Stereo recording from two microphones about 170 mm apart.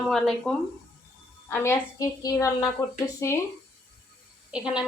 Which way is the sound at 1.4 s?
15° left (ahead or behind).